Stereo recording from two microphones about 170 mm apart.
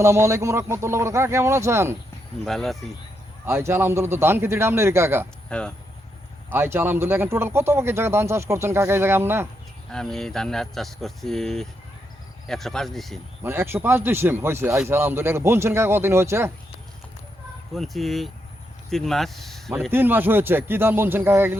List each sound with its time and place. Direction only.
0.0 s a man's voice: 15° right (ahead or behind)
2.4 s speech: centre (ahead or behind)
3.4 s a man's voice: 15° right (ahead or behind)
5.5 s speech: 5° left (ahead or behind)
6.5 s a man's voice: 15° right (ahead or behind)
9.9 s speech: 5° left (ahead or behind)
13.4 s a man's voice: 15° right (ahead or behind)
17.7 s speech: centre (ahead or behind)
19.9 s a man's voice: 10° right (ahead or behind)